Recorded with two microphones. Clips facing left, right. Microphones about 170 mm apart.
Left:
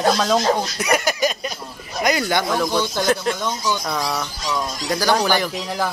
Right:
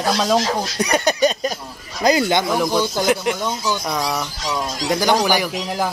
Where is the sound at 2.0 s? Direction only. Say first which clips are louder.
Right 4 dB; 25° right (ahead or behind).